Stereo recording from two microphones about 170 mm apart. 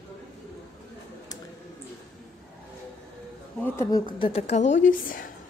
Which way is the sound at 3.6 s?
20° left (ahead or behind).